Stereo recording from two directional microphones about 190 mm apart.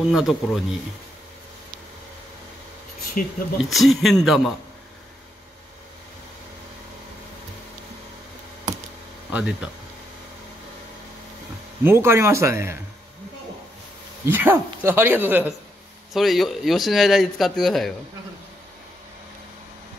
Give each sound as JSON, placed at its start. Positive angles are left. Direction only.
{"t": 0.0, "sound": "a man's voice", "side_deg": 0}
{"t": 3.2, "sound": "speech", "side_deg": 45}
{"t": 3.7, "sound": "a man's voice", "side_deg": 0}
{"t": 9.3, "sound": "speech", "side_deg": -5}
{"t": 11.8, "sound": "speech", "side_deg": -10}
{"t": 14.2, "sound": "a man's voice", "side_deg": -10}